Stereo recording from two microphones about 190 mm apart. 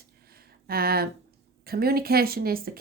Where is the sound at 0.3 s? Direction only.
55° right (ahead or behind).